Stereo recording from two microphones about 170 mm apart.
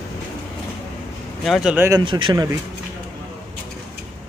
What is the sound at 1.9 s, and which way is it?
Speech, 25° right (ahead or behind).